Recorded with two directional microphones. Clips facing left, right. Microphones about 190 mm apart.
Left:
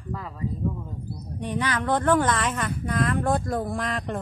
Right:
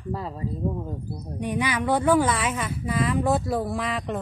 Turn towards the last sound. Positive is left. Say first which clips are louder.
# right 1 dB
turn(degrees=0)  # may be behind; listen again after turning